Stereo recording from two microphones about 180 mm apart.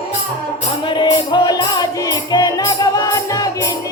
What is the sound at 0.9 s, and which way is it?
Music, 25° left (ahead or behind).